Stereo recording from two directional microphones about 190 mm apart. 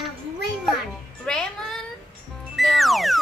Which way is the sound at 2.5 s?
Centre (ahead or behind).